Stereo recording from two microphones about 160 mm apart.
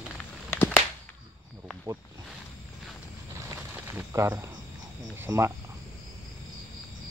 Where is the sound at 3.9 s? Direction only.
15° right (ahead or behind).